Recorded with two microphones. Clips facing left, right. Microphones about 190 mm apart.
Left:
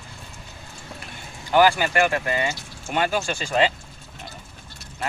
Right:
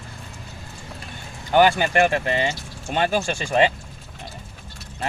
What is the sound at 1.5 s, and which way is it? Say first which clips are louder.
Speech: right 1 dB; 25° right (ahead or behind).